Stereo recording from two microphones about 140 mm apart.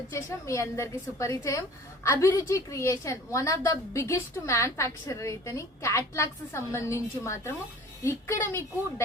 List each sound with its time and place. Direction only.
0.1 s a woman's voice: 20° left (ahead or behind)